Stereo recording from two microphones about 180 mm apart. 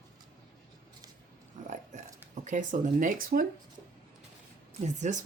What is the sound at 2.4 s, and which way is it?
Speech, 45° right (ahead or behind).